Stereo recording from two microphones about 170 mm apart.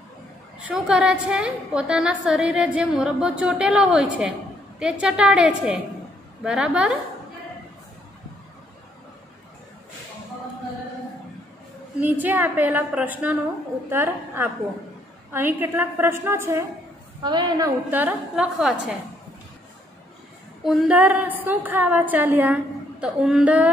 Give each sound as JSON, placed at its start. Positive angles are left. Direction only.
{"t": 0.7, "sound": "a woman's voice", "side_deg": -5}
{"t": 12.0, "sound": "a woman's voice", "side_deg": -10}
{"t": 17.2, "sound": "a woman's voice", "side_deg": -25}
{"t": 17.9, "sound": "a woman's voice", "side_deg": -5}
{"t": 20.6, "sound": "a woman's voice", "side_deg": -5}